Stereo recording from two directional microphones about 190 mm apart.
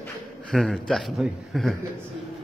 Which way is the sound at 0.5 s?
Centre (ahead or behind).